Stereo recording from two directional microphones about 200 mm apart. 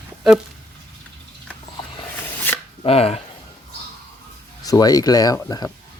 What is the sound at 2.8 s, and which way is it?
Speech, 30° left (ahead or behind).